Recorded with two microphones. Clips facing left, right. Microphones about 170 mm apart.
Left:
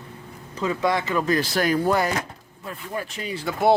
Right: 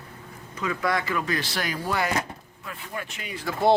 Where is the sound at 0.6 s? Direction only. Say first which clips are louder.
Left 4 dB; 25° left (ahead or behind).